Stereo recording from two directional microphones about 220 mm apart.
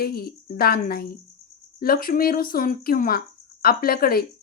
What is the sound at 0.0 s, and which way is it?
A woman's voice, 45° left (ahead or behind).